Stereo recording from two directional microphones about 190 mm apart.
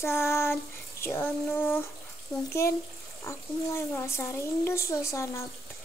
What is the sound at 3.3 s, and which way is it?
Speech, 15° left (ahead or behind).